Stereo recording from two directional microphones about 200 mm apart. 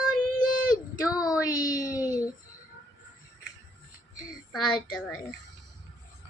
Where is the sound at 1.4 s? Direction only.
15° left (ahead or behind).